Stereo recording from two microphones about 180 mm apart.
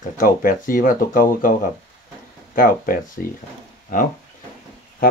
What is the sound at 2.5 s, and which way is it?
Speech, 50° left (ahead or behind).